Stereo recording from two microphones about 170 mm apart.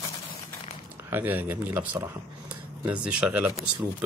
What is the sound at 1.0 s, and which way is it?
Speech, 10° right (ahead or behind).